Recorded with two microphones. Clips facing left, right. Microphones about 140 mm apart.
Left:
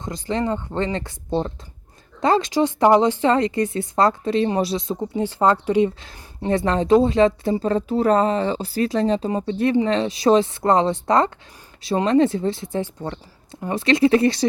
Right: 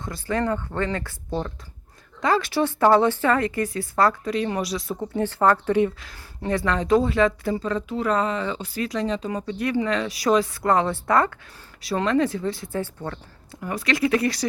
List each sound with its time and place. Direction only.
0.0 s a woman's voice: 20° left (ahead or behind)